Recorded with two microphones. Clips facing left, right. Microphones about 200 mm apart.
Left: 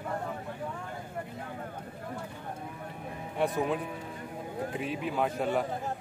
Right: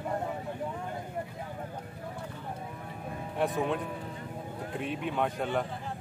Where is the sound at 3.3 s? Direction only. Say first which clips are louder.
Left 1 dB; centre (ahead or behind).